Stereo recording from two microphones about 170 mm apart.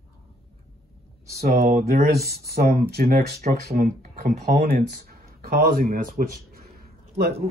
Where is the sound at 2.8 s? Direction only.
65° right (ahead or behind).